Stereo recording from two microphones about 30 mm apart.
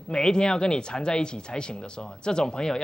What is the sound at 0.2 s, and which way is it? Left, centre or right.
Speech, left.